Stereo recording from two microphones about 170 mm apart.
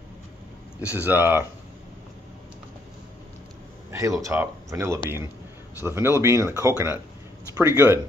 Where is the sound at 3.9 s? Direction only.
20° right (ahead or behind).